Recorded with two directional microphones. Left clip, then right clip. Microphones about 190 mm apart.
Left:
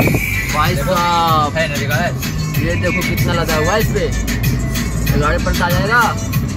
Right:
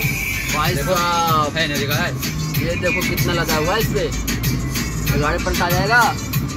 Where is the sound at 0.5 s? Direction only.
Centre (ahead or behind).